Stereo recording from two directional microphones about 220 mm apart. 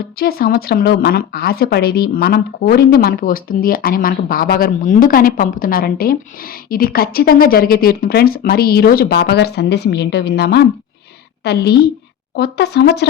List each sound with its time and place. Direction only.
0.2 s a woman's voice: 45° left (ahead or behind)